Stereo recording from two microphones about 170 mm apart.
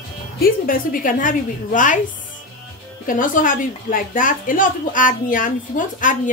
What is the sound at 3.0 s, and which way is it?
A woman's voice, 50° left (ahead or behind).